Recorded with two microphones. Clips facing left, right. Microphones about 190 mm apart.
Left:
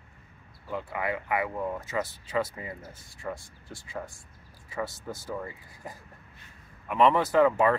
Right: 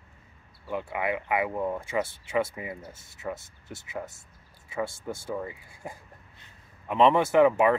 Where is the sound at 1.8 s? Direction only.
25° right (ahead or behind).